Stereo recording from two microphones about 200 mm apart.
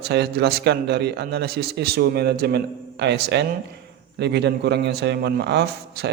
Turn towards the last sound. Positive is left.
turn(degrees=-55)  # may be behind; listen again after turning